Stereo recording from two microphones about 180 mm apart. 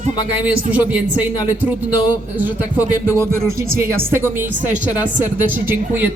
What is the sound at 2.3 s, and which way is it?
A woman's voice, 10° right (ahead or behind).